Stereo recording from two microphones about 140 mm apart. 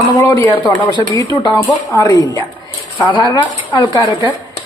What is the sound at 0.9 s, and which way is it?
Speech, 30° right (ahead or behind).